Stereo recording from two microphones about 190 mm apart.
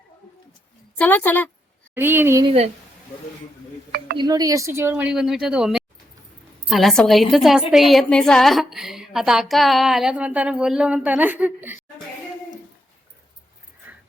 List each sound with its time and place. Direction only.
0.9 s a woman's voice: 10° left (ahead or behind)
2.0 s speech: 10° right (ahead or behind)
2.4 s a woman's voice: 30° right (ahead or behind)
4.2 s a woman's voice: 20° right (ahead or behind)